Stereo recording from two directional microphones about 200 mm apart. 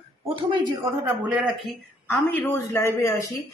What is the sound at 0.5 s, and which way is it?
Speech, 15° right (ahead or behind).